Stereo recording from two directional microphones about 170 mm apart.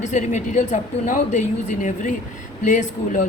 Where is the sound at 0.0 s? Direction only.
45° left (ahead or behind).